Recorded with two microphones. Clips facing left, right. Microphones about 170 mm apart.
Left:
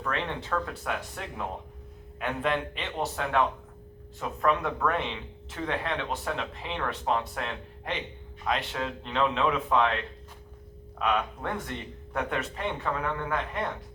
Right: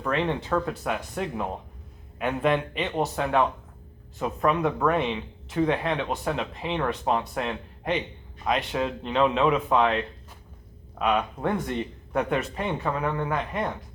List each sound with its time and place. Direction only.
0.0 s speech: 20° right (ahead or behind)
10.9 s speech: 15° right (ahead or behind)